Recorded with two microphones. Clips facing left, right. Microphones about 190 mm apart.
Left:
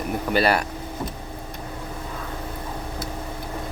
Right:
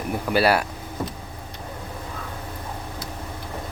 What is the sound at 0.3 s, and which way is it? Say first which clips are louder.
Speech: right 1 dB; 5° right (ahead or behind).